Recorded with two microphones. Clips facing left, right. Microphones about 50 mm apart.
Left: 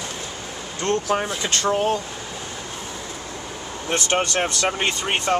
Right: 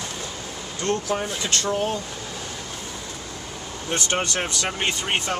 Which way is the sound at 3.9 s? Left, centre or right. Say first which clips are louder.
Left 3 dB; left.